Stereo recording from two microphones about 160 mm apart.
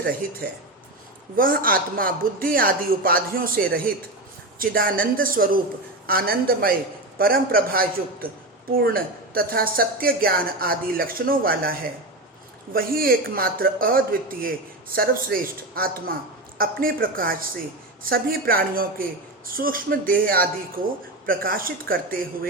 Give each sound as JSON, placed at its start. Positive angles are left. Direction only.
{"t": 1.4, "sound": "speech", "side_deg": -65}
{"t": 4.6, "sound": "speech", "side_deg": -65}
{"t": 12.7, "sound": "speech", "side_deg": -65}